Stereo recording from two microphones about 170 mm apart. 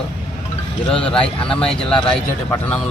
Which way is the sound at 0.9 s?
5° left (ahead or behind).